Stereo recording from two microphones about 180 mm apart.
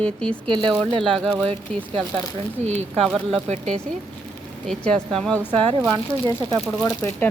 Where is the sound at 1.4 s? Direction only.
30° right (ahead or behind).